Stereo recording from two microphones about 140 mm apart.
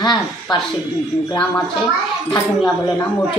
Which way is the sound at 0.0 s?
30° left (ahead or behind).